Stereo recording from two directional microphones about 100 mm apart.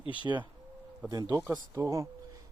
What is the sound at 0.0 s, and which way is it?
Speech, 60° left (ahead or behind).